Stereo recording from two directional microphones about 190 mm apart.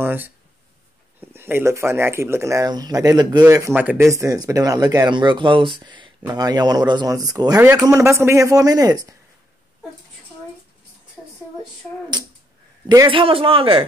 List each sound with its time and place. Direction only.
0.0 s a sound: 10° right (ahead or behind)
1.2 s speech: 10° right (ahead or behind)
12.8 s speech: 20° right (ahead or behind)